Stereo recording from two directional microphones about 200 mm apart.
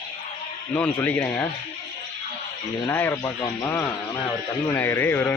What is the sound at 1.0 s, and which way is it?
Speech, 10° left (ahead or behind).